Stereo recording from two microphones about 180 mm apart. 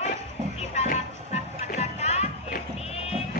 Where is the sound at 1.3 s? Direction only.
35° left (ahead or behind).